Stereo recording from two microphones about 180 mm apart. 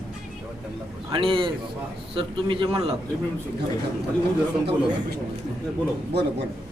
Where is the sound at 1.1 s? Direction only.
30° right (ahead or behind).